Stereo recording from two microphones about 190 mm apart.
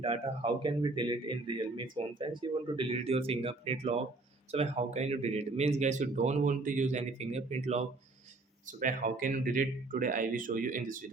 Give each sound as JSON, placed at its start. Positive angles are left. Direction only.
{"t": 0.0, "sound": "speech", "side_deg": -30}